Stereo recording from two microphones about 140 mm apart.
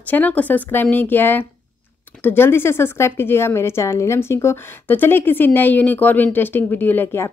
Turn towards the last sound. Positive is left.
turn(degrees=15)  # may be behind; listen again after turning